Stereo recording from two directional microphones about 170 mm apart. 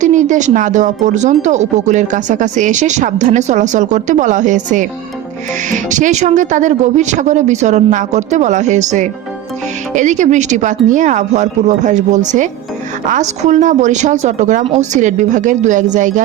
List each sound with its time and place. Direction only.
0.0 s speech: 45° right (ahead or behind)